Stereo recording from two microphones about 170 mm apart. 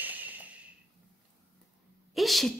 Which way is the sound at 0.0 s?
10° right (ahead or behind).